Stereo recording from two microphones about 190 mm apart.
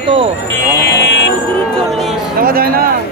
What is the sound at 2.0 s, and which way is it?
Music, centre (ahead or behind).